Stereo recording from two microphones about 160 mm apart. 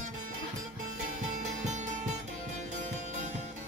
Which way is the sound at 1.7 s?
50° right (ahead or behind).